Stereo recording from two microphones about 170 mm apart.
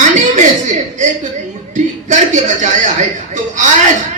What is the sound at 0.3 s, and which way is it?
Chuckle, 45° right (ahead or behind).